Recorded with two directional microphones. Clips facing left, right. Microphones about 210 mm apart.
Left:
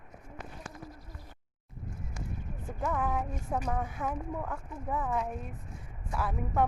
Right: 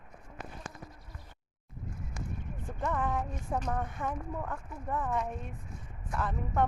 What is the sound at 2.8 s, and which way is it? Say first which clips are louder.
A woman's voice: left 1 dB; 5° left (ahead or behind).